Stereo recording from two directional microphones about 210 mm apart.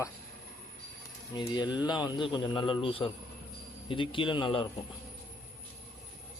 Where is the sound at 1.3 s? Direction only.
20° left (ahead or behind).